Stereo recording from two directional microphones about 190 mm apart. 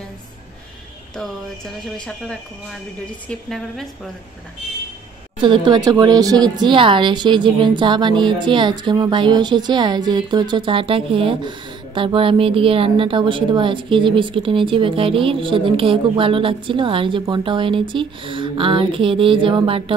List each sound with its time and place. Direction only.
1.9 s a woman's voice: 5° left (ahead or behind)
5.4 s speech: 25° right (ahead or behind)